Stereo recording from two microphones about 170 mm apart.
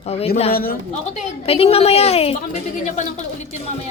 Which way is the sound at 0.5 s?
60° left (ahead or behind).